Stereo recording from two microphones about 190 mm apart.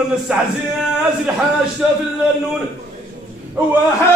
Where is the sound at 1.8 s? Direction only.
5° right (ahead or behind).